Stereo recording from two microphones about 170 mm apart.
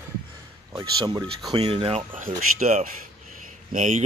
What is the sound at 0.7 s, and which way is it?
Speech, 20° right (ahead or behind).